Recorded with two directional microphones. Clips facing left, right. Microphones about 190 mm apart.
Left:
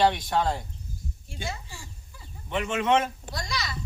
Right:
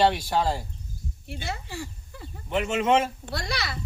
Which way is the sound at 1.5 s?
65° right (ahead or behind).